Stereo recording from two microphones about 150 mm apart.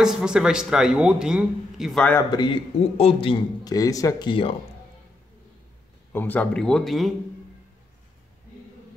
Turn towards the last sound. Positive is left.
turn(degrees=0)  # may be behind; listen again after turning